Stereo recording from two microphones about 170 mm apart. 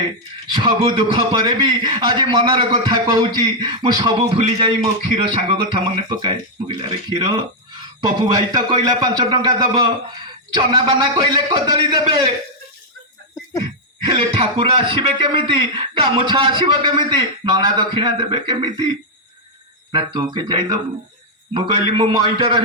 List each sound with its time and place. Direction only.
0.5 s a man's voice: 30° right (ahead or behind)
8.3 s a man's voice: 25° right (ahead or behind)
14.0 s a man's voice: 30° right (ahead or behind)
19.9 s a man's voice: 25° right (ahead or behind)